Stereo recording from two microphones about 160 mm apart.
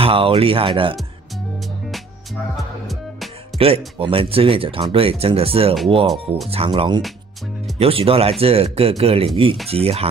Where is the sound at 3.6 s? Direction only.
35° right (ahead or behind).